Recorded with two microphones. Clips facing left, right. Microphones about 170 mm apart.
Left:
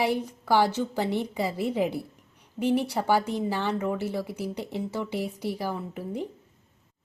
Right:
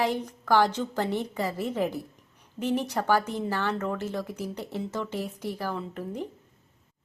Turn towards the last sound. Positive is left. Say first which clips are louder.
# left 1 dB
turn(degrees=10)  # may be behind; listen again after turning